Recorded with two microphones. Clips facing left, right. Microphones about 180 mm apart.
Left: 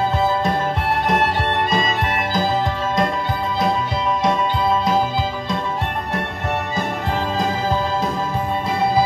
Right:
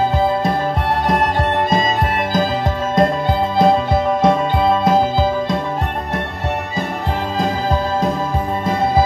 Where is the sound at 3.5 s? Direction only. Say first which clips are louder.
Right 7 dB; 55° right (ahead or behind).